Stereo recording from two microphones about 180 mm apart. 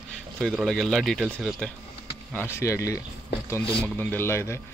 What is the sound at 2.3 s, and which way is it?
Speech, 10° left (ahead or behind).